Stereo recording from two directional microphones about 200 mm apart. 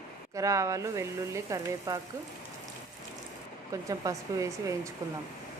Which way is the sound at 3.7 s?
15° right (ahead or behind).